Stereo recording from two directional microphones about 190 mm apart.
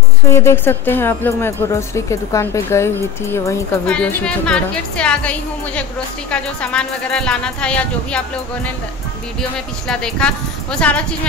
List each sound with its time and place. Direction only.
0.3 s a woman's voice: 15° left (ahead or behind)
6.3 s speech: 5° left (ahead or behind)
9.8 s speech: 5° left (ahead or behind)